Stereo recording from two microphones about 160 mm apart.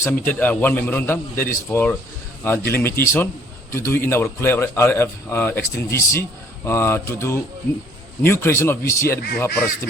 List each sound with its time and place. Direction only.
0.0 s a man's voice: 10° left (ahead or behind)